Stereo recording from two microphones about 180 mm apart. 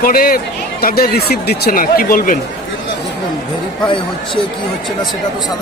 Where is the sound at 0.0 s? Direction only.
55° left (ahead or behind).